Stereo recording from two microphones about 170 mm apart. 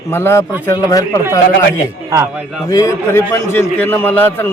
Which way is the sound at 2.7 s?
20° left (ahead or behind).